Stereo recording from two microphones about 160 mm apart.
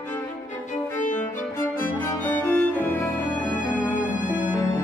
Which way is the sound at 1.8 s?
10° left (ahead or behind).